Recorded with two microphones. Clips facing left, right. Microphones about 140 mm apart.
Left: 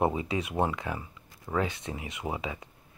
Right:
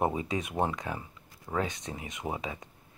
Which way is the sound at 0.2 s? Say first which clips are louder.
Left 1 dB; 45° right (ahead or behind).